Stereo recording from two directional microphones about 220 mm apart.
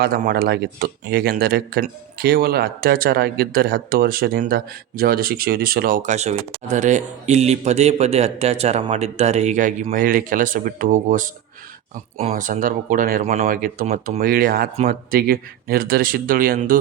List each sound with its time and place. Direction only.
0.0 s speech: 45° right (ahead or behind)
12.3 s speech: 35° right (ahead or behind)